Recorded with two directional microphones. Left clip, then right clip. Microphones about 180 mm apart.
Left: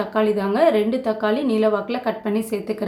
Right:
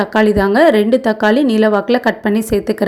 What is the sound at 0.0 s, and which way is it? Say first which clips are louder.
A woman's voice: right 8 dB; 45° right (ahead or behind).